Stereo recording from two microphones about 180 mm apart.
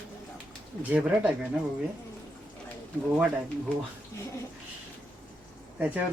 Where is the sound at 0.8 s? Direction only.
10° right (ahead or behind).